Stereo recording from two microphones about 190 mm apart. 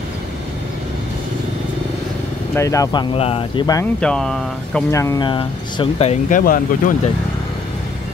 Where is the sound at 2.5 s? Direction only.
15° left (ahead or behind).